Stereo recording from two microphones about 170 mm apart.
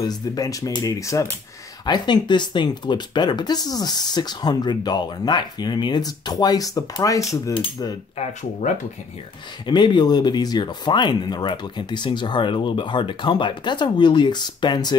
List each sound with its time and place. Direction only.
0.1 s speech: 20° left (ahead or behind)
8.2 s speech: 45° left (ahead or behind)
9.7 s speech: 25° left (ahead or behind)